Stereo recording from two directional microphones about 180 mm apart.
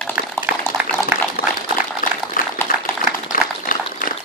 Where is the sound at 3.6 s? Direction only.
50° left (ahead or behind).